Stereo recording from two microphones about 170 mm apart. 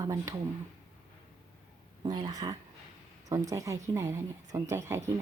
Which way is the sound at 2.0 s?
25° right (ahead or behind).